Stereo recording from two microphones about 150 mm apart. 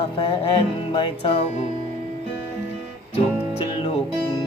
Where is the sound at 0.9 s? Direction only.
35° left (ahead or behind).